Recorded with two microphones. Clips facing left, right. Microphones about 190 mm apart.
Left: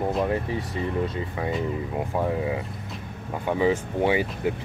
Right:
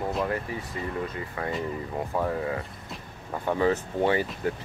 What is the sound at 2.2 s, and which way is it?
Speech, 10° left (ahead or behind).